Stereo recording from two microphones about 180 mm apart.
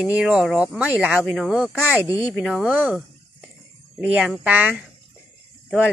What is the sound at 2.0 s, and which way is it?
Speech, 15° left (ahead or behind).